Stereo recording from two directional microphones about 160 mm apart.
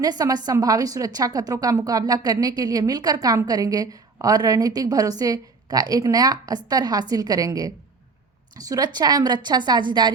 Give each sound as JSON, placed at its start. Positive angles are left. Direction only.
{"t": 0.0, "sound": "a woman's voice", "side_deg": -25}